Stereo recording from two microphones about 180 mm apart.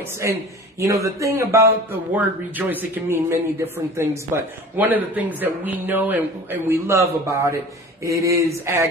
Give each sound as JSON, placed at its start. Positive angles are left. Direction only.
{"t": 0.2, "sound": "speech", "side_deg": -15}